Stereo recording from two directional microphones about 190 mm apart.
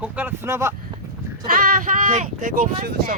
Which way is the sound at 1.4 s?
45° right (ahead or behind).